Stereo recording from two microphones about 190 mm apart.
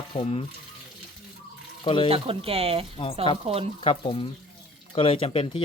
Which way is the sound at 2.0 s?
30° right (ahead or behind).